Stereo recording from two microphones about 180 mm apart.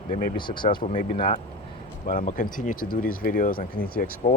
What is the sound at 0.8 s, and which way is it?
Speech, 40° left (ahead or behind).